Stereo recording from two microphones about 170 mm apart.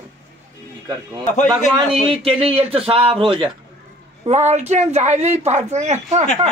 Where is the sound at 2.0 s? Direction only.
35° right (ahead or behind).